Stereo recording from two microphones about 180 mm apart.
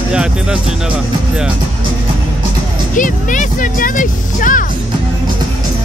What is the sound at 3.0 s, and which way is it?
Speech, 45° left (ahead or behind).